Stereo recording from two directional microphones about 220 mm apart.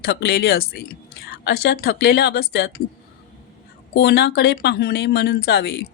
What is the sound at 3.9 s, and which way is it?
A woman's voice, 45° left (ahead or behind).